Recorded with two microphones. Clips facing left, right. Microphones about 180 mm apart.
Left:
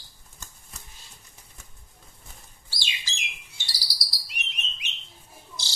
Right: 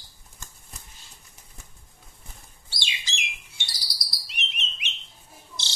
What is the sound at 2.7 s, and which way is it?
Bird, 20° right (ahead or behind).